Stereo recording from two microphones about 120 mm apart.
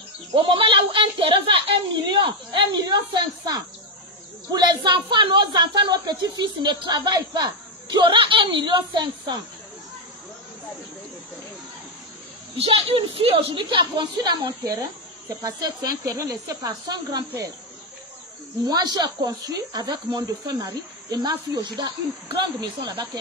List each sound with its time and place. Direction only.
0.3 s a woman's voice: 45° right (ahead or behind)
12.5 s a woman's voice: 55° right (ahead or behind); by 17.2 s 35° right (ahead or behind)
18.6 s a woman's voice: 35° right (ahead or behind)